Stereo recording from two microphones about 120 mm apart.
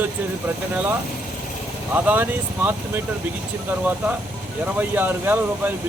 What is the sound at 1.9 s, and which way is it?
Speech, 15° right (ahead or behind).